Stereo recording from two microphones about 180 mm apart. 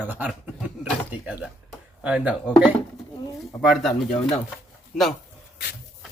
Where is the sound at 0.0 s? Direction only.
10° right (ahead or behind).